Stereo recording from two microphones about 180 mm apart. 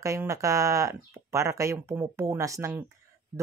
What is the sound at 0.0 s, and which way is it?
Speech, 15° right (ahead or behind).